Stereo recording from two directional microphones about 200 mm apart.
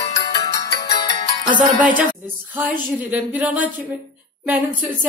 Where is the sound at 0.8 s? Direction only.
20° left (ahead or behind).